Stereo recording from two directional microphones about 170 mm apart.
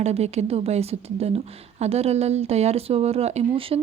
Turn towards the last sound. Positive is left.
turn(degrees=-35)  # may be behind; listen again after turning